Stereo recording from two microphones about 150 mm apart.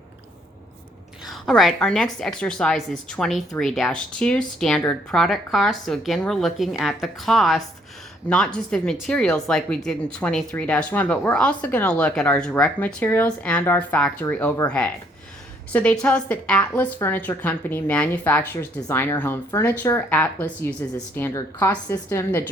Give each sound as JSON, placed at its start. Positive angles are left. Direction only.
{"t": 1.2, "sound": "speech", "side_deg": 0}